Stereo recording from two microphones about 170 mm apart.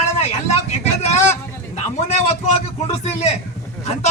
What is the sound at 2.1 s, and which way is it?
A man's voice, 40° left (ahead or behind).